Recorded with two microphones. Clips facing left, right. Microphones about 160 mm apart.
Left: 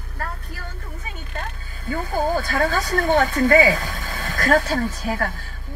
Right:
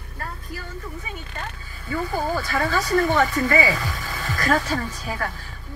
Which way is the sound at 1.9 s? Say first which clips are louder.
Left 2 dB; 50° left (ahead or behind).